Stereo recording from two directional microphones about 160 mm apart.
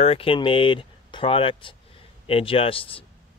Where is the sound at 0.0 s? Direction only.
35° left (ahead or behind).